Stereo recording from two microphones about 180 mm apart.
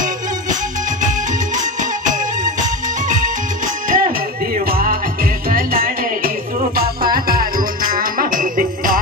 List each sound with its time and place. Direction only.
1.0 s music: 45° right (ahead or behind)